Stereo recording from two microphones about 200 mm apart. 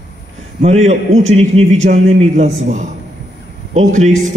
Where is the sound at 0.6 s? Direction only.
35° right (ahead or behind).